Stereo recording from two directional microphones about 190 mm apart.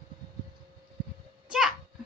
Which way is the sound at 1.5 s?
5° right (ahead or behind).